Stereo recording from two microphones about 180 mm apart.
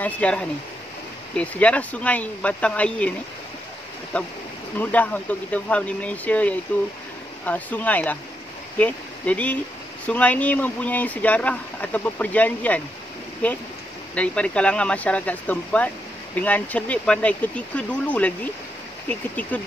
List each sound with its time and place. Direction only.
0.0 s speech: 5° left (ahead or behind)
4.1 s speech: 10° left (ahead or behind)